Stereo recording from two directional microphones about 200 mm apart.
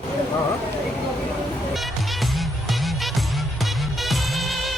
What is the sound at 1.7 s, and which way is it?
Music, centre (ahead or behind).